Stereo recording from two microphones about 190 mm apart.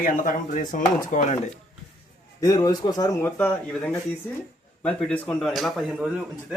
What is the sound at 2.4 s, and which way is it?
Speech, 20° left (ahead or behind).